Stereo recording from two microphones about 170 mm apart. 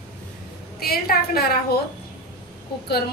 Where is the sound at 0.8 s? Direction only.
65° left (ahead or behind).